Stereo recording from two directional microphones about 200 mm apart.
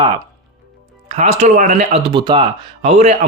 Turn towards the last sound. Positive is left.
turn(degrees=-35)  # may be behind; listen again after turning